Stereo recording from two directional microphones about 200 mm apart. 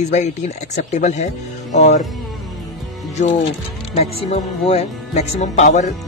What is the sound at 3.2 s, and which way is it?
Speech, 35° left (ahead or behind).